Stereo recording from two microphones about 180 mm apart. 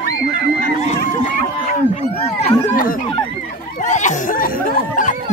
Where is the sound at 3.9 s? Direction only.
45° left (ahead or behind).